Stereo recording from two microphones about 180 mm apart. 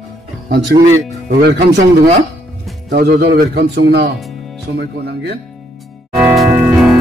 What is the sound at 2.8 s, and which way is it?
Speech, 65° right (ahead or behind).